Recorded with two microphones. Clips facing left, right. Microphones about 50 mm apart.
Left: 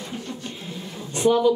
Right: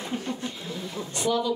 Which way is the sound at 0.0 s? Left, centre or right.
Right.